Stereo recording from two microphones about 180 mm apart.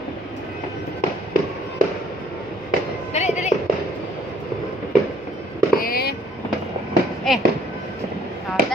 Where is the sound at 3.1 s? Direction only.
40° left (ahead or behind).